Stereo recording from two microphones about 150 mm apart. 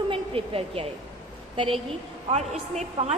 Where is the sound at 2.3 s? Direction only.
50° right (ahead or behind).